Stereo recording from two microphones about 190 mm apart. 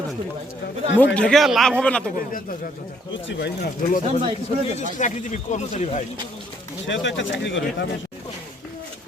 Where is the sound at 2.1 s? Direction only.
45° left (ahead or behind).